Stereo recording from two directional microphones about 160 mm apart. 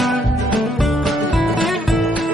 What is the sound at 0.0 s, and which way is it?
Music, centre (ahead or behind).